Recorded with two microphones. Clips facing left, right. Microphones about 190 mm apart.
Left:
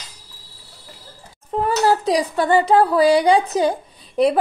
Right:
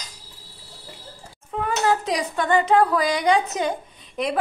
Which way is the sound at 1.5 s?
40° left (ahead or behind).